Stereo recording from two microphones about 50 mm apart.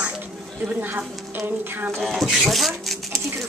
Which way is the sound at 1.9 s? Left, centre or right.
Centre.